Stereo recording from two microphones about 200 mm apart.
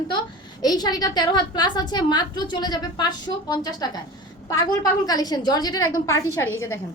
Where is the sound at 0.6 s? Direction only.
20° left (ahead or behind).